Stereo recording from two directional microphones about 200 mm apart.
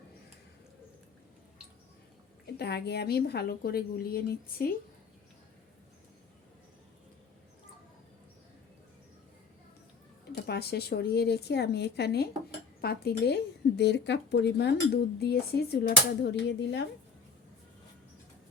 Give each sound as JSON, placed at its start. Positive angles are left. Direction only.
{"t": 2.5, "sound": "a woman's voice", "side_deg": 55}
{"t": 10.3, "sound": "a woman's voice", "side_deg": 55}